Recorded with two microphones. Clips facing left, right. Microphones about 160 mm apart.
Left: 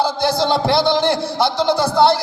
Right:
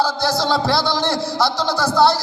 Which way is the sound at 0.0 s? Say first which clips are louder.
Left 2 dB; 55° left (ahead or behind).